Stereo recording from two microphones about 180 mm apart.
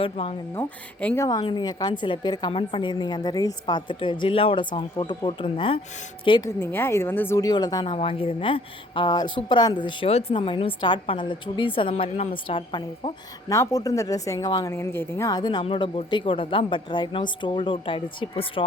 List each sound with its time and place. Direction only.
0.0 s speech: 30° left (ahead or behind)
0.5 s a woman's voice: 10° left (ahead or behind); by 6.5 s 25° left (ahead or behind)
6.6 s a woman's voice: 10° left (ahead or behind); by 13.1 s 30° left (ahead or behind)
13.5 s a woman's voice: 15° left (ahead or behind)